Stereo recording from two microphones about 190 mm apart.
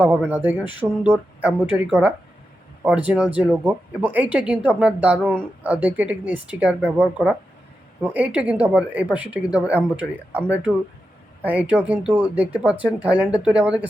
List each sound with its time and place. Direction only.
0.0 s speech: 10° right (ahead or behind)
8.0 s speech: 10° right (ahead or behind)